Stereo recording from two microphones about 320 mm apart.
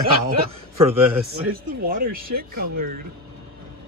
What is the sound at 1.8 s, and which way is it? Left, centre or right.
Speech, right.